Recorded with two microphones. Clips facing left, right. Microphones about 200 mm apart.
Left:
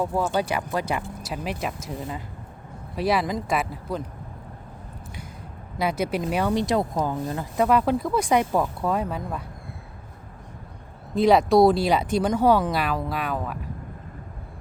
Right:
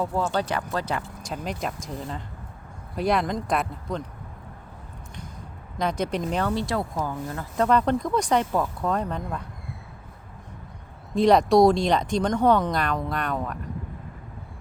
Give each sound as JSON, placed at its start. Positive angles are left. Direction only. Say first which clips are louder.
{"t": 0.0, "sound": "speech", "louder": "left 1 dB", "side_deg": 15}
{"t": 5.8, "sound": "speech", "louder": "left 1 dB", "side_deg": 10}
{"t": 11.1, "sound": "speech", "louder": "even", "side_deg": 0}